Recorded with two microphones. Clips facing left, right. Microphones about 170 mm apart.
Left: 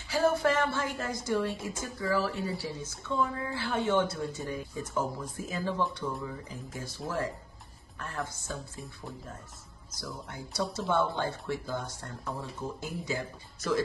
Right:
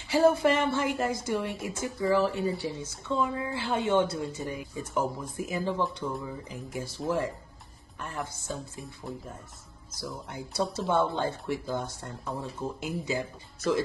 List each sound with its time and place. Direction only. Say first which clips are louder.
0.1 s a woman's voice: right 4 dB; 15° right (ahead or behind)
9.0 s speech: right 5 dB; centre (ahead or behind)
9.9 s speech: right 3 dB; 20° right (ahead or behind)